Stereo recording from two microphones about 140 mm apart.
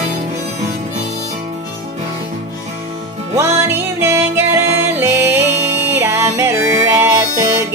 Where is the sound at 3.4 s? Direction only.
20° right (ahead or behind).